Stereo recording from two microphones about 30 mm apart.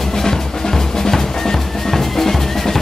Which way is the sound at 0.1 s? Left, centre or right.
Centre.